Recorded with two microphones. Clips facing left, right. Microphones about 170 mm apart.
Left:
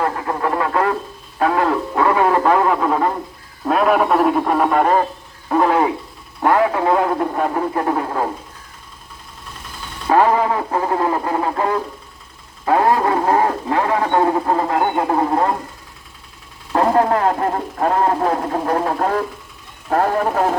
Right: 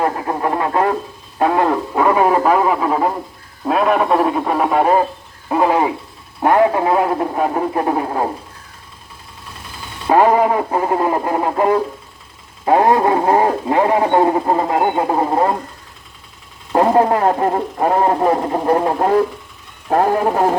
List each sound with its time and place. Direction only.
0.0 s radio: 25° right (ahead or behind)
3.7 s speech: centre (ahead or behind)
5.5 s a sound: 15° right (ahead or behind)
6.8 s speech: 10° right (ahead or behind)
10.1 s speech: 15° right (ahead or behind)
16.7 s speech: 15° right (ahead or behind)